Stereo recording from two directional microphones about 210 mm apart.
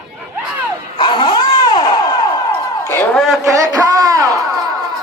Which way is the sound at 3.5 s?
15° right (ahead or behind).